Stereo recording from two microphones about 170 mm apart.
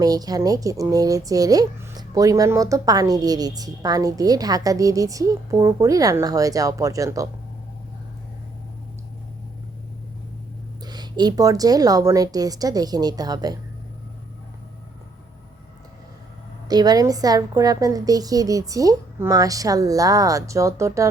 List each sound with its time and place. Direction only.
0.0 s speech: 20° right (ahead or behind)
10.8 s speech: 25° right (ahead or behind)
16.6 s speech: 25° right (ahead or behind)